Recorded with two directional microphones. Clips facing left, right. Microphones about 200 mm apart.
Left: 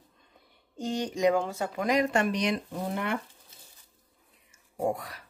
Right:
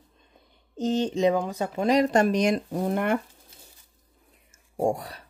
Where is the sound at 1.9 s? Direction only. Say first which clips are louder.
Right 5 dB; 35° right (ahead or behind); by 3.5 s 50° right (ahead or behind).